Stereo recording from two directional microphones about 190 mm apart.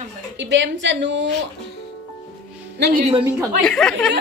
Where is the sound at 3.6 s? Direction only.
5° left (ahead or behind).